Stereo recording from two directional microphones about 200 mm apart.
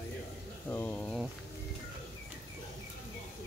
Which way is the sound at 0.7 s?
10° left (ahead or behind).